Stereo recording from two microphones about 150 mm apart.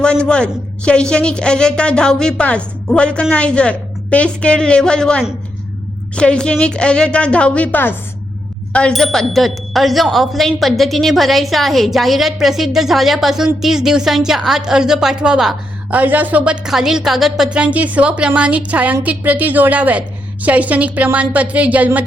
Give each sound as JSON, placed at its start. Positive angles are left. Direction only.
{"t": 0.0, "sound": "a woman's voice", "side_deg": 5}